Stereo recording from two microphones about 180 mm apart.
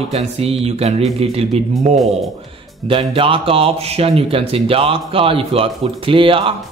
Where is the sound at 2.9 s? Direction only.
30° right (ahead or behind).